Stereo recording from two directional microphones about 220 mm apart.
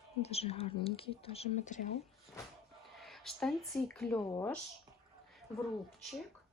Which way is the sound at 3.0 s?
Centre (ahead or behind).